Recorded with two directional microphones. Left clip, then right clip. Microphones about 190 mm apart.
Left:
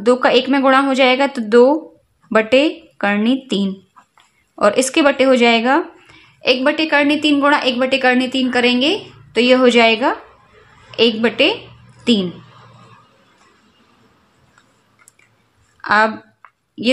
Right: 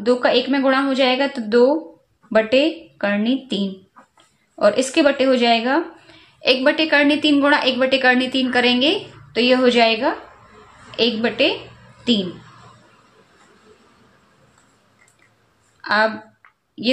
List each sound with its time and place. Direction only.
0.0 s speech: 40° left (ahead or behind)
15.8 s a woman's voice: 35° left (ahead or behind)